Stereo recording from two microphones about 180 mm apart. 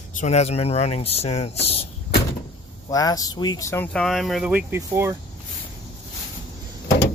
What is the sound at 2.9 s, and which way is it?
Speech, 20° left (ahead or behind).